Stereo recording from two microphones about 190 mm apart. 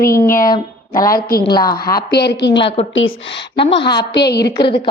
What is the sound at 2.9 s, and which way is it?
Speech, 85° left.